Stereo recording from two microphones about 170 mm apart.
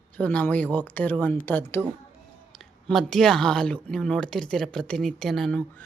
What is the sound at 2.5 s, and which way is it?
Speech, centre (ahead or behind).